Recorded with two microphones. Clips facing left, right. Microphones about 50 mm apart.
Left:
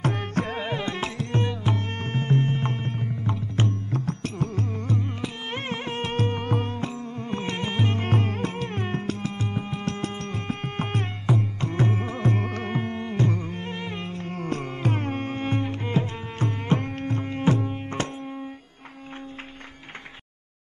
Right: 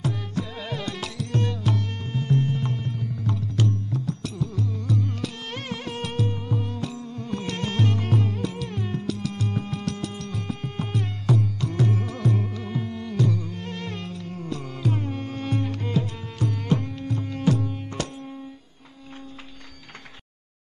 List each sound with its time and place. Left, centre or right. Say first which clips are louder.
0.0 s music: left 3 dB; left
0.6 s music: left 3 dB; left
2.0 s music: left 1 dB; left
3.9 s carnatic music: left 1 dB; left
6.1 s music: left 3 dB; left
6.7 s music: left 1 dB; left
7.9 s music: even; left
9.3 s music: right 1 dB; left
11.2 s music: right 1 dB; left
12.4 s music: left 2 dB; left